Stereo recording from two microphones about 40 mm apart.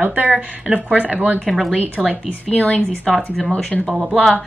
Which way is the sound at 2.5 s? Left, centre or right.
Left.